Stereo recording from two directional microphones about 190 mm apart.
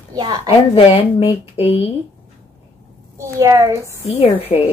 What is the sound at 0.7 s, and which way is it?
Speech, 30° left (ahead or behind).